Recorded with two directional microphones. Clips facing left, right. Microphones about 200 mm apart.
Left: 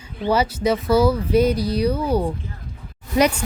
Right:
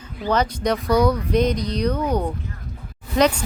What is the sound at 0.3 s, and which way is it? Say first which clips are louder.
Speech: left 2 dB; 5° left (ahead or behind).